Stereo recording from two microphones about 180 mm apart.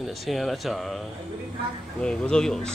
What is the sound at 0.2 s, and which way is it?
Speech, centre (ahead or behind).